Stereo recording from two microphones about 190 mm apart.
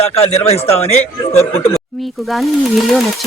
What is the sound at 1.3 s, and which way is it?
Speech, 15° left (ahead or behind).